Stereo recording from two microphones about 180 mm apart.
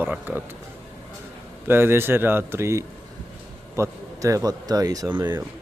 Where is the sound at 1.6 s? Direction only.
10° right (ahead or behind).